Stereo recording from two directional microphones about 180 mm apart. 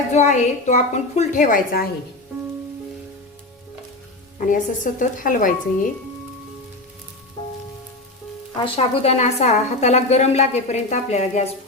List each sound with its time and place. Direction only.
0.1 s a woman's voice: 40° left (ahead or behind)
4.4 s a woman's voice: 45° left (ahead or behind)
8.5 s a woman's voice: 30° left (ahead or behind)